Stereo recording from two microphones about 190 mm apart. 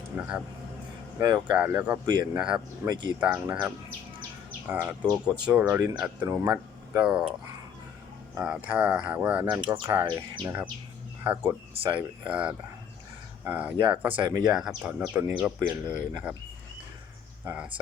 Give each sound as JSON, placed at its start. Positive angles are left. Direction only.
{"t": 0.2, "sound": "speech", "side_deg": -10}
{"t": 1.2, "sound": "speech", "side_deg": -20}
{"t": 1.5, "sound": "speech", "side_deg": -10}
{"t": 2.8, "sound": "speech", "side_deg": -20}
{"t": 3.2, "sound": "speech", "side_deg": -10}
{"t": 7.0, "sound": "speech", "side_deg": -5}
{"t": 8.4, "sound": "speech", "side_deg": -5}
{"t": 9.6, "sound": "speech", "side_deg": -20}
{"t": 11.7, "sound": "speech", "side_deg": -30}
{"t": 12.3, "sound": "speech", "side_deg": -5}
{"t": 14.2, "sound": "speech", "side_deg": -20}
{"t": 14.5, "sound": "speech", "side_deg": -5}
{"t": 17.4, "sound": "speech", "side_deg": -10}